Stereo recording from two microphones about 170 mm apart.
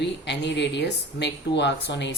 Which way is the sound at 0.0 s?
90° left.